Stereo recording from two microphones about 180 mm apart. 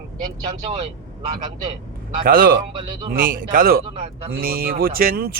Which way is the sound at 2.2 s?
55° right (ahead or behind).